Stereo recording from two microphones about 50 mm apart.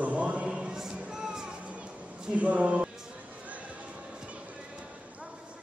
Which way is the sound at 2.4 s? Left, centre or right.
Right.